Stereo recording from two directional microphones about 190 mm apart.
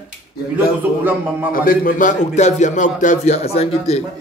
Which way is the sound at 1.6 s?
45° left (ahead or behind).